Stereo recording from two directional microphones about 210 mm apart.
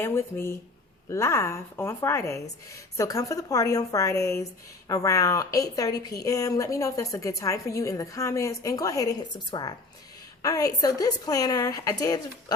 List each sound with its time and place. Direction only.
0.0 s a woman's voice: 10° left (ahead or behind)